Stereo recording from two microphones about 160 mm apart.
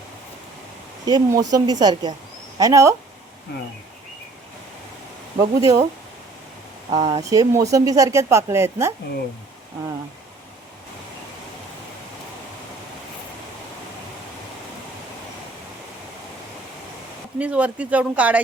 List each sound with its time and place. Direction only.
1.0 s speech: 25° right (ahead or behind)
5.4 s speech: 25° right (ahead or behind)
6.9 s speech: 25° right (ahead or behind)
17.3 s speech: 10° right (ahead or behind)